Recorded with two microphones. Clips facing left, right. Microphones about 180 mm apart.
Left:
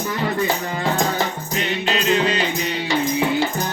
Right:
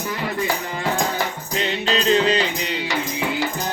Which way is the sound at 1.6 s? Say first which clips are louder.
Right 1 dB; 30° right (ahead or behind).